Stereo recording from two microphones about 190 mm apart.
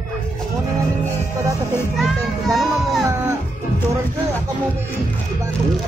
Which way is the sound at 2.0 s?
Centre (ahead or behind).